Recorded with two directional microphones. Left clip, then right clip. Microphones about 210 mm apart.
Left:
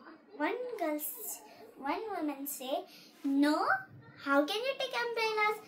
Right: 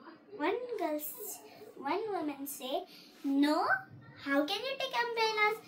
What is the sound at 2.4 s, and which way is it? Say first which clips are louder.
Speech: even; 20° left (ahead or behind).